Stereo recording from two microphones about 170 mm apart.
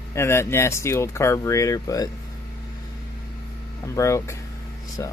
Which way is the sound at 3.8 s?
15° left (ahead or behind).